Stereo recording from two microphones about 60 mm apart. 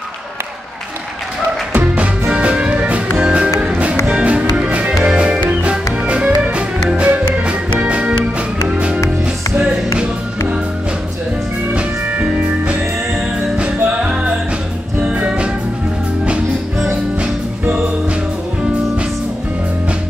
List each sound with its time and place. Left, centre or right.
1.7 s music: right
11.7 s music: centre